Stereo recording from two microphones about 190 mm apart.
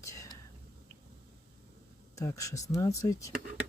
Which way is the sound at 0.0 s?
15° left (ahead or behind).